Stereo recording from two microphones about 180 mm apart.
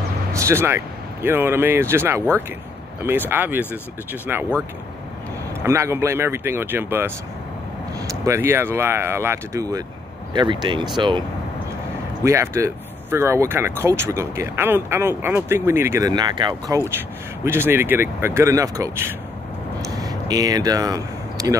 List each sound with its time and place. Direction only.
0.3 s speech: 15° right (ahead or behind)
5.6 s speech: 15° right (ahead or behind)
8.3 s speech: 15° right (ahead or behind)
12.2 s speech: 15° right (ahead or behind)
17.5 s speech: 10° right (ahead or behind)